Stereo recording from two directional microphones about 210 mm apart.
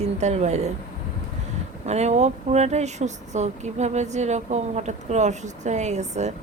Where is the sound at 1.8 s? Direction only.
30° right (ahead or behind).